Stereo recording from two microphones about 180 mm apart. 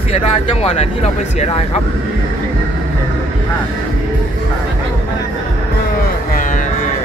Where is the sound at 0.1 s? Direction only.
35° left (ahead or behind).